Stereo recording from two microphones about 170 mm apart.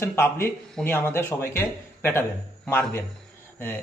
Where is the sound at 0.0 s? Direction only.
15° left (ahead or behind).